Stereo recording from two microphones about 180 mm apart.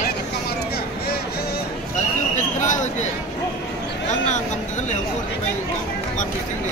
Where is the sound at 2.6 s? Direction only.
40° left (ahead or behind).